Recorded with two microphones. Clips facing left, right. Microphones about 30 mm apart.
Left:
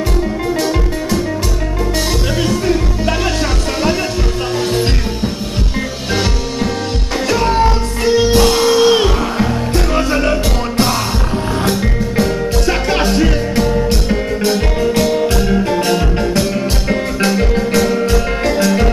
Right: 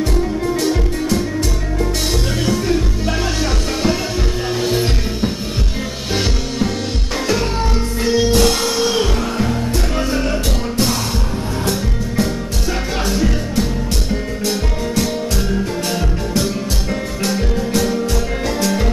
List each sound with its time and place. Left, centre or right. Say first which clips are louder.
4.6 s music: left 2 dB; centre
7.5 s music: left 6 dB; left
8.4 s music: left 4 dB; centre
8.7 s music: left 6 dB; left
12.6 s music: left 4 dB; left
13.6 s music: left 7 dB; left